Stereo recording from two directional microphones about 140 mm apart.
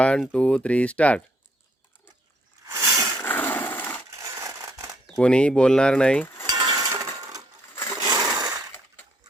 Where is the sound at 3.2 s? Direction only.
15° left (ahead or behind).